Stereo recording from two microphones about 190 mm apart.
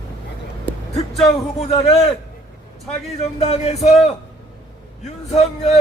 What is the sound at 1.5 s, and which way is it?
Music, 35° left (ahead or behind).